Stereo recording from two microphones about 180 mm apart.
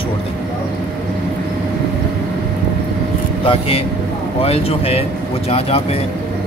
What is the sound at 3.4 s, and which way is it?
Speech, 30° left (ahead or behind).